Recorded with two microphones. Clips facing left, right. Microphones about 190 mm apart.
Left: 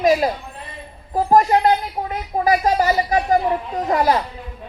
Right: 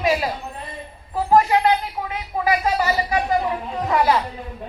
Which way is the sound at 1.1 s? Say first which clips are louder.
Left 2 dB; 40° left (ahead or behind).